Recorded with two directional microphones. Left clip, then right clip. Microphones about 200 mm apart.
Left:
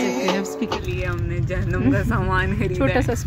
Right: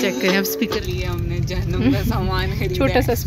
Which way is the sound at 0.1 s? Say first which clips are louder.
Right 3 dB; 40° left (ahead or behind).